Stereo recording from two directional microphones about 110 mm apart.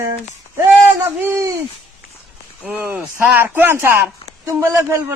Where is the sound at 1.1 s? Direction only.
20° right (ahead or behind).